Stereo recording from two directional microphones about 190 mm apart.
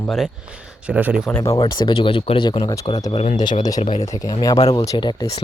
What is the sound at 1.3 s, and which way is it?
Speech, 10° left (ahead or behind).